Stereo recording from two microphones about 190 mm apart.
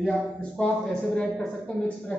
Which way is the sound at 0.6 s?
5° left (ahead or behind).